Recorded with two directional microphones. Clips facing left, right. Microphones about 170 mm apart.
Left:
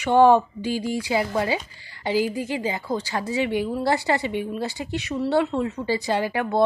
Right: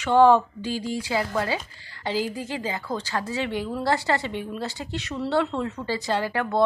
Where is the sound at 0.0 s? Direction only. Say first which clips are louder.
Left 1 dB; 15° left (ahead or behind).